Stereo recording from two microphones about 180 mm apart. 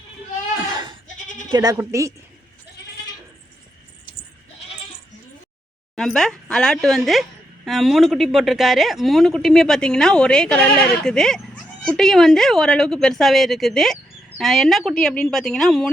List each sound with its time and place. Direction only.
1.0 s bleat: 45° left (ahead or behind)
1.5 s a woman's voice: 25° right (ahead or behind)
6.0 s speech: 5° left (ahead or behind)